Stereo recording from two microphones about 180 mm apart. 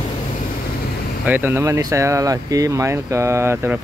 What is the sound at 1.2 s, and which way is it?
Speech, 10° right (ahead or behind).